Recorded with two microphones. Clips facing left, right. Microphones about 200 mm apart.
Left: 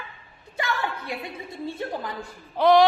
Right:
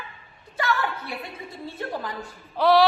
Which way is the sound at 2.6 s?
20° left (ahead or behind).